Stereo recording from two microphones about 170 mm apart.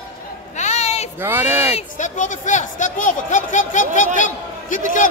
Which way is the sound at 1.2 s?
10° right (ahead or behind).